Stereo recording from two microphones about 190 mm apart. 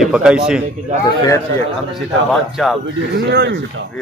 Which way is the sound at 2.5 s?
Centre (ahead or behind).